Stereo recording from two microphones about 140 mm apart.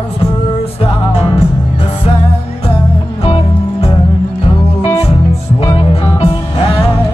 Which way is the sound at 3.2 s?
45° left (ahead or behind).